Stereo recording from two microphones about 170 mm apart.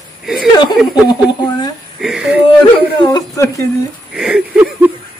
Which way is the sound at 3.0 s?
25° left (ahead or behind).